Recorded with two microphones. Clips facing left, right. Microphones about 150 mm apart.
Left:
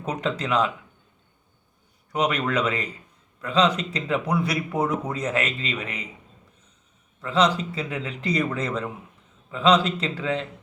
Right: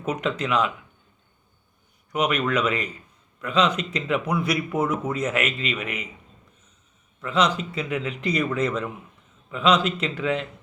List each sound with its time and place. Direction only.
0.0 s speech: 35° left (ahead or behind)
2.1 s speech: 35° left (ahead or behind)
7.2 s speech: 30° left (ahead or behind)